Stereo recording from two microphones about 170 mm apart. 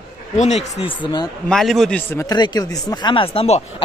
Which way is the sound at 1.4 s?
Centre (ahead or behind).